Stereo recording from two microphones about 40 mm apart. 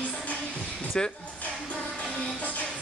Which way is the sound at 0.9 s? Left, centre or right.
Centre.